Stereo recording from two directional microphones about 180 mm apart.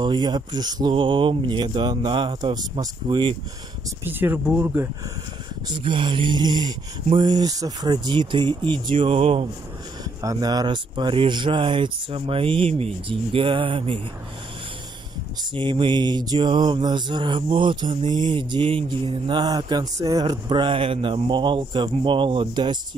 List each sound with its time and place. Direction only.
0.0 s mantra: 25° right (ahead or behind)
4.1 s speech: 10° right (ahead or behind)
5.7 s mantra: 25° right (ahead or behind)
10.0 s mantra: 20° right (ahead or behind)
15.5 s mantra: 30° right (ahead or behind)